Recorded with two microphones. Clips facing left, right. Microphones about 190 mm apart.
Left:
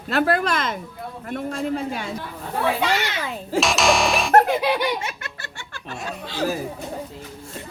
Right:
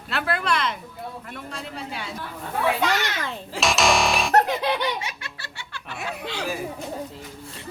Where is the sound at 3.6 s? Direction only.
Centre (ahead or behind).